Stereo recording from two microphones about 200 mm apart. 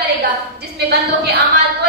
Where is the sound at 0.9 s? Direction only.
55° right (ahead or behind).